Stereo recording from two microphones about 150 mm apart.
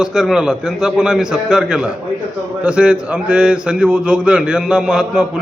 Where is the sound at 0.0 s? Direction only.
5° right (ahead or behind).